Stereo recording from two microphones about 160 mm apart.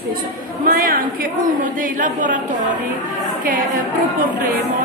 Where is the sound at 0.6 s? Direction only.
60° right (ahead or behind).